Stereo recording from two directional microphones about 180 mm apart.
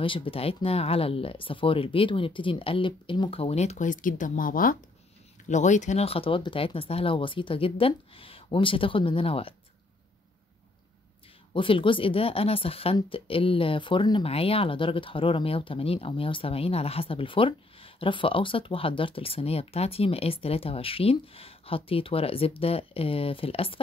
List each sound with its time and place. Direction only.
0.0 s speech: 30° left (ahead or behind)
11.5 s speech: 30° left (ahead or behind)